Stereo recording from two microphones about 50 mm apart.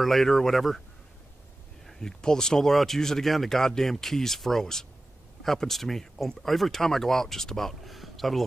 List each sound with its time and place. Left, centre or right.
0.0 s speech: centre
1.9 s speech: centre